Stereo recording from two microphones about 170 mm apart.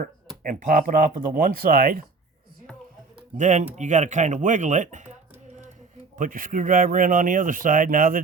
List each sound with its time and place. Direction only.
0.4 s speech: 55° right (ahead or behind)
3.3 s speech: 45° right (ahead or behind)
6.1 s speech: 55° right (ahead or behind)